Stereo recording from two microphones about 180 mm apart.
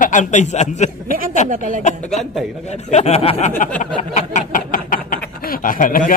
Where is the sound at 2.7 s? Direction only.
40° left (ahead or behind).